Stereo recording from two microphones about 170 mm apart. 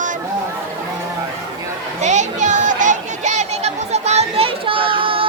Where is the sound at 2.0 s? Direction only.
45° right (ahead or behind).